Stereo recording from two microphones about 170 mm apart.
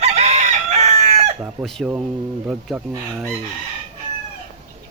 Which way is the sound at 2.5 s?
5° right (ahead or behind).